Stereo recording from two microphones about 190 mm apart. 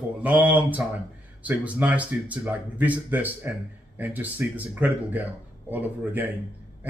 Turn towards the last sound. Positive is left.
turn(degrees=-10)  # may be behind; listen again after turning